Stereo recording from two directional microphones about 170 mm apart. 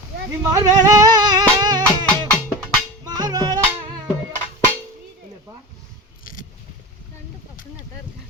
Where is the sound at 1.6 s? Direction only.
25° right (ahead or behind).